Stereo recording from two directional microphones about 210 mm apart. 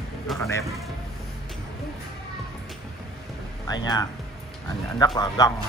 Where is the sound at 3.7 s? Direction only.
20° left (ahead or behind).